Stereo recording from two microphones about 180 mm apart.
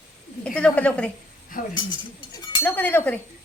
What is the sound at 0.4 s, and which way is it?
Speech, 5° left (ahead or behind).